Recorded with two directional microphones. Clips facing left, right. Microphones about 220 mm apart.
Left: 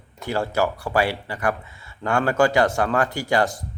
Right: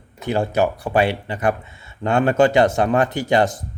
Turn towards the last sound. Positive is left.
turn(degrees=-20)  # may be behind; listen again after turning